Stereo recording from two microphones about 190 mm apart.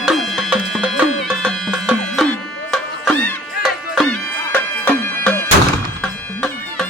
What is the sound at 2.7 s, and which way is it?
Music, 5° left (ahead or behind).